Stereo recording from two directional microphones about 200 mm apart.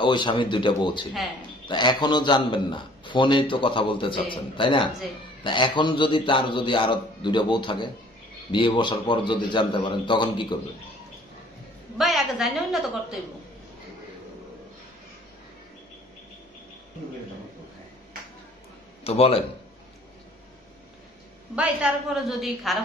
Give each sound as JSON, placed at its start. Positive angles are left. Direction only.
{"t": 0.0, "sound": "a man's voice", "side_deg": 25}
{"t": 12.0, "sound": "a woman's voice", "side_deg": 0}
{"t": 19.0, "sound": "a man's voice", "side_deg": 30}
{"t": 21.5, "sound": "a woman's voice", "side_deg": -5}